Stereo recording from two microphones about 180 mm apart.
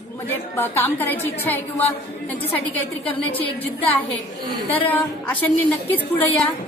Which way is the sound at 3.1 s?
30° left (ahead or behind).